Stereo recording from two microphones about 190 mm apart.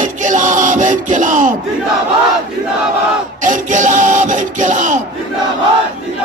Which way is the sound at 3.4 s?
40° right (ahead or behind).